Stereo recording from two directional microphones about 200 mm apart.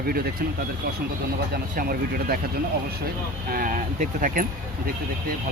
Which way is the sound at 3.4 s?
45° right (ahead or behind).